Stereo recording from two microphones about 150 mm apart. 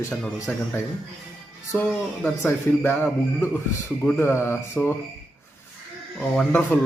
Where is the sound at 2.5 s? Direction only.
15° left (ahead or behind).